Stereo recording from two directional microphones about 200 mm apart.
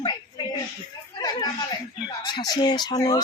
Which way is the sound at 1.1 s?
20° left (ahead or behind).